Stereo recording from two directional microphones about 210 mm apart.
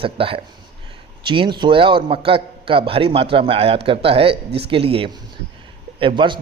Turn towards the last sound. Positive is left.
turn(degrees=-20)  # may be behind; listen again after turning